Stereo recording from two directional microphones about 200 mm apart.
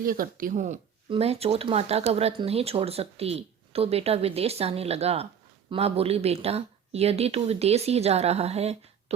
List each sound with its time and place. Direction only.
0.0 s speech: 45° right (ahead or behind)